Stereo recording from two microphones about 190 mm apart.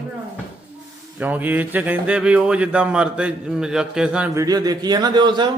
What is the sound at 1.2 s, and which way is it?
A man's voice, 10° right (ahead or behind).